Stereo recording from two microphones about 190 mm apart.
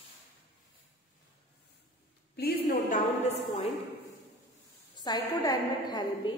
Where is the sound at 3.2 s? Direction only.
35° left (ahead or behind).